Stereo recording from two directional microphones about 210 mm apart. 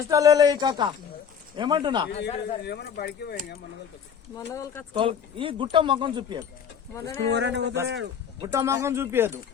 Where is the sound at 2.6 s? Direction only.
50° left (ahead or behind).